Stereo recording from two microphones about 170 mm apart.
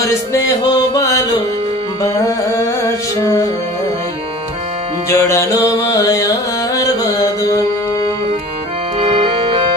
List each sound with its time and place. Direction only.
0.0 s music: 20° left (ahead or behind)
0.9 s carnatic music: 20° left (ahead or behind)
2.2 s carnatic music: 15° left (ahead or behind)
5.1 s music: 15° left (ahead or behind)
9.0 s organ: 35° right (ahead or behind)